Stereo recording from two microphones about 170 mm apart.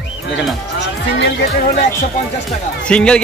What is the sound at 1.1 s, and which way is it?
Speech, 70° left (ahead or behind).